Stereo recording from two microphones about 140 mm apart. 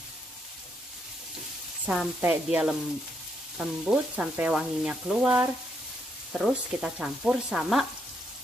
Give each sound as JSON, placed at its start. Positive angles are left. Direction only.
{"t": 1.9, "sound": "sizzle", "side_deg": -5}
{"t": 3.5, "sound": "frying", "side_deg": -10}
{"t": 6.3, "sound": "sizzle", "side_deg": -5}